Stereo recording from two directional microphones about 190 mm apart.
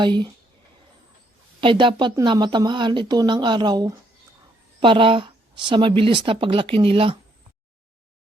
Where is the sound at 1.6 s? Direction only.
25° right (ahead or behind).